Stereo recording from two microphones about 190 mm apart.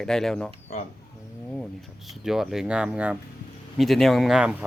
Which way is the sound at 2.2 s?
Centre (ahead or behind).